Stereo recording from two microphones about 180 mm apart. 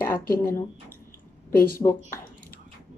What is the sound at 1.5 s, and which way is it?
Speech, 50° left (ahead or behind).